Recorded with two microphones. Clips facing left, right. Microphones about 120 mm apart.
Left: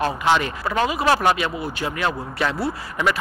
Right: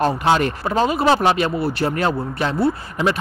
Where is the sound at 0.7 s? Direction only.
30° right (ahead or behind).